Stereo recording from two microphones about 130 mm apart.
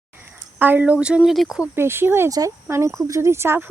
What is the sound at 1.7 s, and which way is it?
A woman's voice, 20° right (ahead or behind).